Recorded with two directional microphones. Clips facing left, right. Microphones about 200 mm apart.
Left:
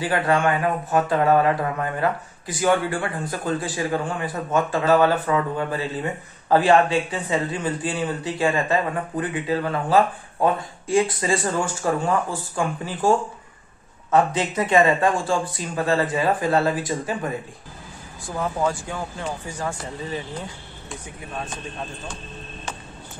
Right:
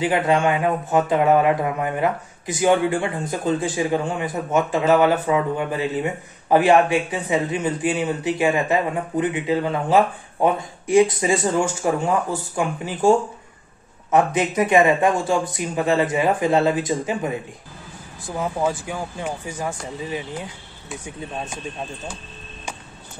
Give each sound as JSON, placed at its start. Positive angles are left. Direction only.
{"t": 0.0, "sound": "speech", "side_deg": -20}
{"t": 14.1, "sound": "speech", "side_deg": -15}
{"t": 18.3, "sound": "speech", "side_deg": -15}